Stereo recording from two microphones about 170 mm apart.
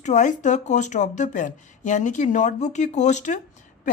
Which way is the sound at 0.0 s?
45° left (ahead or behind).